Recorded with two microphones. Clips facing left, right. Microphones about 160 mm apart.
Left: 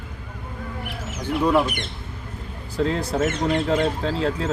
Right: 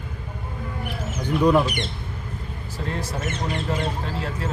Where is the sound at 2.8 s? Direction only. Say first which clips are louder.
Left 9 dB; 90° left.